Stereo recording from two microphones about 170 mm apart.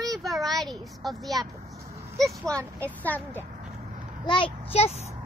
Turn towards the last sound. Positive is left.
turn(degrees=35)  # may be behind; listen again after turning